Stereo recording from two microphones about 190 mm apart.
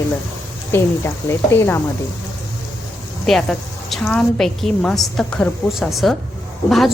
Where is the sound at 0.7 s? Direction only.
15° left (ahead or behind).